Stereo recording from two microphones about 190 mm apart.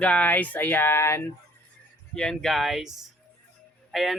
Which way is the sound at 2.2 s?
Centre (ahead or behind).